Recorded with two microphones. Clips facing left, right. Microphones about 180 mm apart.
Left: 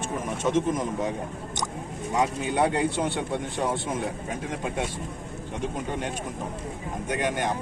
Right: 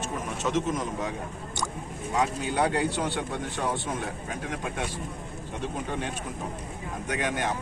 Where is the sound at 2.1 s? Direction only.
20° left (ahead or behind).